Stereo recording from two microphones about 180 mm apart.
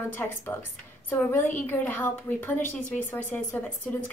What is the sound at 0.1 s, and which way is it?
A woman's voice, 10° left (ahead or behind).